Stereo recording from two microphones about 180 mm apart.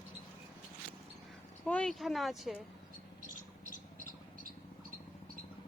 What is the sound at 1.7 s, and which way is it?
Speech, 5° left (ahead or behind).